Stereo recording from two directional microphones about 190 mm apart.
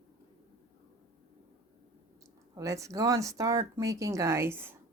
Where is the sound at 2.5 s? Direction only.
15° right (ahead or behind).